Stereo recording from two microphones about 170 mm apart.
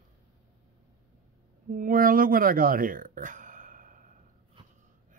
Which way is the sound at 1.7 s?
55° right (ahead or behind).